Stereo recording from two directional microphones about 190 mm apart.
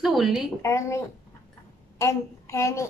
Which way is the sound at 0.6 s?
15° left (ahead or behind).